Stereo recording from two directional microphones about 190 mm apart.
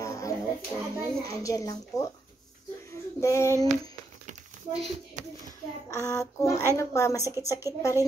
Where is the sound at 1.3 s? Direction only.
15° left (ahead or behind).